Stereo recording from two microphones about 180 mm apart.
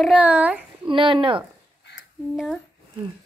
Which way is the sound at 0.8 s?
30° right (ahead or behind).